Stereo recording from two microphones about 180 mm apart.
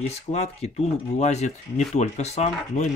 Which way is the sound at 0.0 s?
40° left (ahead or behind).